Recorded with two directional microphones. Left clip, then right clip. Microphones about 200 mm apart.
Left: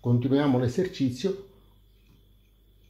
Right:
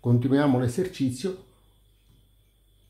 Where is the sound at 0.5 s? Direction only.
10° right (ahead or behind).